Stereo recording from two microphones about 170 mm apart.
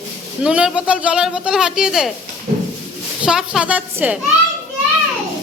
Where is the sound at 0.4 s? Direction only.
5° right (ahead or behind).